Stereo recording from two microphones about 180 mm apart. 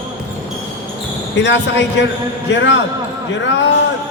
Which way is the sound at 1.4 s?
80° left.